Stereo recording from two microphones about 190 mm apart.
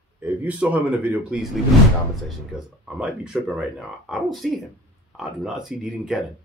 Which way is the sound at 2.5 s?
5° right (ahead or behind).